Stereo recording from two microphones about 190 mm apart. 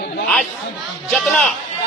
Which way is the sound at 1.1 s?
5° left (ahead or behind).